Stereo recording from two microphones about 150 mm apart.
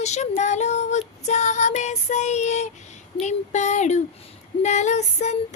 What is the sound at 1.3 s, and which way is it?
Child singing, 50° left (ahead or behind).